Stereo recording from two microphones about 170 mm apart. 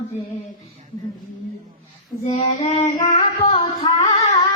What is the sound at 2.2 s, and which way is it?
Child singing, 40° left (ahead or behind).